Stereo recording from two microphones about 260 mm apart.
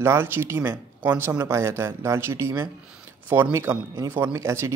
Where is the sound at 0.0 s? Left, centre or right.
Centre.